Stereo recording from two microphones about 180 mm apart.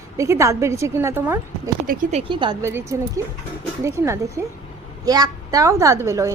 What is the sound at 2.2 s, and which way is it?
Speech, 25° right (ahead or behind).